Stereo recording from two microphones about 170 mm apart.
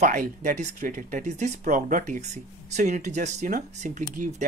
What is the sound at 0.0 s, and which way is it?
Speech, 45° right (ahead or behind).